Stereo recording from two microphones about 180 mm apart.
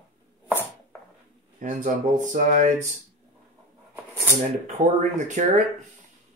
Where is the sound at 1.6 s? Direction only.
45° right (ahead or behind).